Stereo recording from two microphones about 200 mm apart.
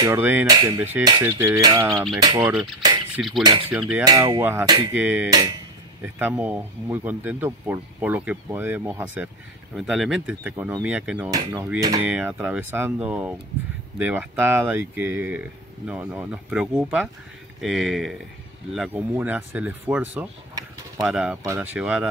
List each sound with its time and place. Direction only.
0.0 s speech: 10° right (ahead or behind)
3.2 s speech: centre (ahead or behind)
3.4 s speech: 25° right (ahead or behind)
3.7 s speech: 5° right (ahead or behind)
4.0 s speech: 20° right (ahead or behind)
11.2 s speech: 15° right (ahead or behind)